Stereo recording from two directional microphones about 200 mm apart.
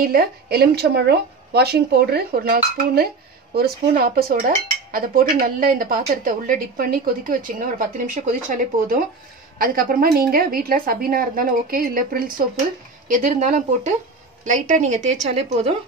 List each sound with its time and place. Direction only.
0.0 s a woman's voice: 50° right (ahead or behind); by 15.7 s 30° right (ahead or behind)